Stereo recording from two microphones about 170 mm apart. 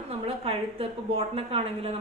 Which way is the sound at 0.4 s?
35° right (ahead or behind).